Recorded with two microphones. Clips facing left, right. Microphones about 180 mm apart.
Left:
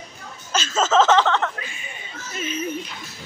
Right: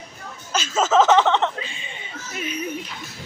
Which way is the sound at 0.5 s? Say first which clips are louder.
Even; 10° right (ahead or behind).